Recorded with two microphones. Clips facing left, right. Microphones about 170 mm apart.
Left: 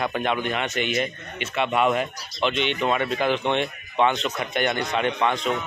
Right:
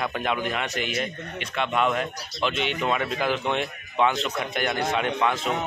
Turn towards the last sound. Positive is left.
turn(degrees=-5)  # may be behind; listen again after turning